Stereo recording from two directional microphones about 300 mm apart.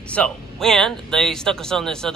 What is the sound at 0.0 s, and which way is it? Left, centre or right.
Speech, centre.